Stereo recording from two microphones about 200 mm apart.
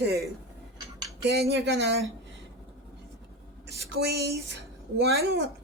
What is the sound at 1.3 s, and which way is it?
Speech, 55° right (ahead or behind).